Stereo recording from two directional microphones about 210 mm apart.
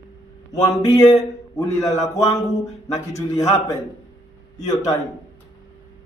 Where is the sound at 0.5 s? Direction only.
15° left (ahead or behind).